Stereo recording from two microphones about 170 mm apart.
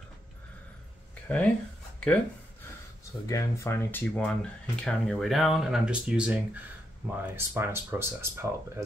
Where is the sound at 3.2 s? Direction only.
20° left (ahead or behind).